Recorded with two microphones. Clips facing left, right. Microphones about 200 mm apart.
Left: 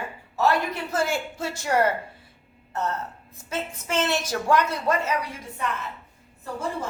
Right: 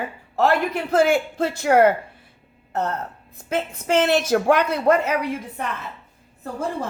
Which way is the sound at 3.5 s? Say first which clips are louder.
Right 7 dB; 60° right (ahead or behind).